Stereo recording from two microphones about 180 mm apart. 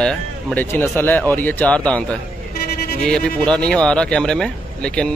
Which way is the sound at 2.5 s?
60° left (ahead or behind).